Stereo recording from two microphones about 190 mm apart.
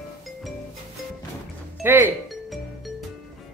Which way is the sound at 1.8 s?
10° right (ahead or behind).